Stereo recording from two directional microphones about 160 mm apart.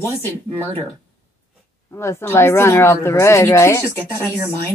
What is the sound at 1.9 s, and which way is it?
Speech, 15° left (ahead or behind).